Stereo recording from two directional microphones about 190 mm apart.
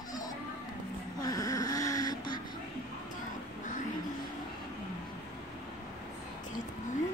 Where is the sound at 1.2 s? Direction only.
20° left (ahead or behind).